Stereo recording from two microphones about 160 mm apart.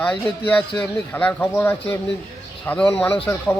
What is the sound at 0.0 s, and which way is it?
Speech, 10° left (ahead or behind).